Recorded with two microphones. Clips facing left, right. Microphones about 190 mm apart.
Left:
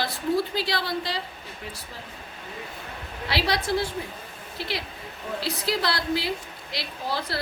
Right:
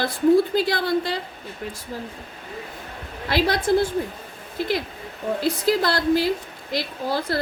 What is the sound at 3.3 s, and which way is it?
A woman's voice, 50° right (ahead or behind).